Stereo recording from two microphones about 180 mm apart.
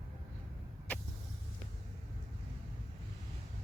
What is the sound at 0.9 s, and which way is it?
Vehicle, 10° left (ahead or behind).